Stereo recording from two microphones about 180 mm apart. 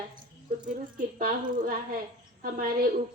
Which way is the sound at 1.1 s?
50° right (ahead or behind).